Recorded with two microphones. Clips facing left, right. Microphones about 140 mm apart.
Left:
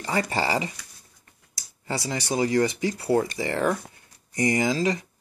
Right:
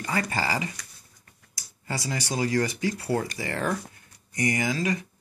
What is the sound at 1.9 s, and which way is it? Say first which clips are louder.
Speech: left 3 dB; 20° left (ahead or behind).